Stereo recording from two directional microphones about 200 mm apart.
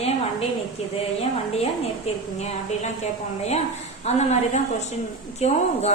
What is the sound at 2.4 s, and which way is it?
Speech, 35° left (ahead or behind).